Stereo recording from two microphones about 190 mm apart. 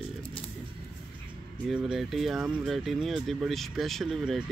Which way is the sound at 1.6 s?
5° right (ahead or behind).